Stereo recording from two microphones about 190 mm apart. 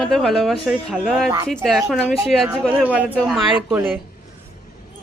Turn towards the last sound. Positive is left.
turn(degrees=-10)  # may be behind; listen again after turning